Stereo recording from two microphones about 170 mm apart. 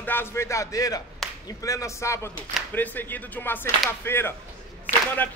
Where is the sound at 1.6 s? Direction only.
20° left (ahead or behind).